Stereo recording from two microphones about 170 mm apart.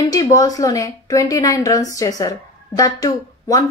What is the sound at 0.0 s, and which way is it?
Speech, 20° left (ahead or behind).